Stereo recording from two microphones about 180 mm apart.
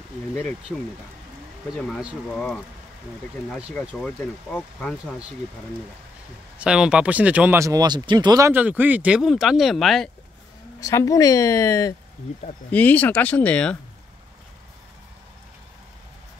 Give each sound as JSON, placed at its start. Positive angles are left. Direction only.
{"t": 0.4, "sound": "speech", "side_deg": 5}
{"t": 1.8, "sound": "speech", "side_deg": 0}
{"t": 3.4, "sound": "speech", "side_deg": -5}
{"t": 6.6, "sound": "speech", "side_deg": -5}
{"t": 10.8, "sound": "speech", "side_deg": 15}